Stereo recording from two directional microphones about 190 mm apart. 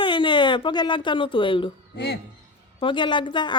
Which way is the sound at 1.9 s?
60° left (ahead or behind).